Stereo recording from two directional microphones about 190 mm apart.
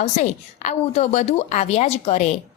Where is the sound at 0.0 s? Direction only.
40° left (ahead or behind).